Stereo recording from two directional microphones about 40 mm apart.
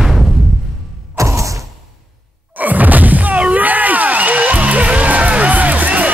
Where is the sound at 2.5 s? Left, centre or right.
Right.